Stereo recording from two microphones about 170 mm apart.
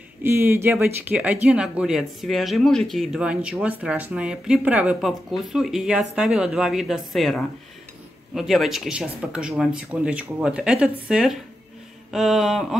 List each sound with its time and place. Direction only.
0.2 s speech: 15° right (ahead or behind)